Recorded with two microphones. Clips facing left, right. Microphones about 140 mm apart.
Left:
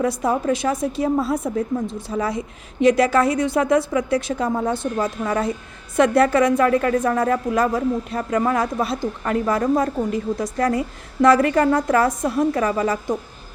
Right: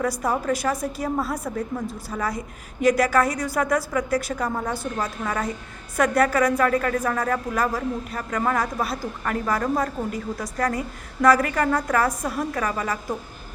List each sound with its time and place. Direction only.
0.0 s a woman's voice: 25° left (ahead or behind)